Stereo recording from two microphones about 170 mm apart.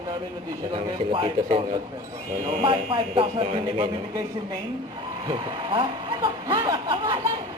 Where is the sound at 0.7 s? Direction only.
25° right (ahead or behind).